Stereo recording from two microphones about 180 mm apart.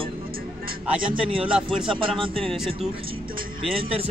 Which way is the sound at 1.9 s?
30° right (ahead or behind).